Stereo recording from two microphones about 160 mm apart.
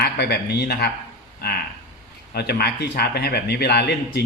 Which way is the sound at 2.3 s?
85° left.